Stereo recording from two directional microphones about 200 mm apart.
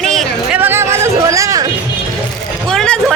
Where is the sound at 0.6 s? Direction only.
10° right (ahead or behind).